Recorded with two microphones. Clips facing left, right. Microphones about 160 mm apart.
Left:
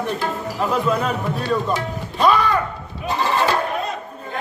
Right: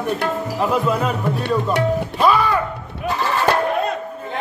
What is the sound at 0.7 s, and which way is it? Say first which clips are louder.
Speech: even; 5° right (ahead or behind).